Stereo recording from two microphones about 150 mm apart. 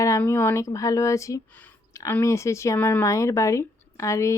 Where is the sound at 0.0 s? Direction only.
20° left (ahead or behind).